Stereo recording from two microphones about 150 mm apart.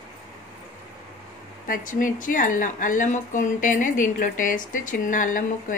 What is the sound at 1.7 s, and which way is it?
Speech, 60° left (ahead or behind).